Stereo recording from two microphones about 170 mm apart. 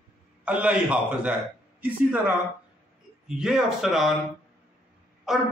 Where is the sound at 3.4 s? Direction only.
Centre (ahead or behind).